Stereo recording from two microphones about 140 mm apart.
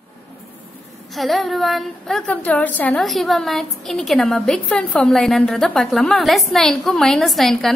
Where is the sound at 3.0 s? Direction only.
Centre (ahead or behind).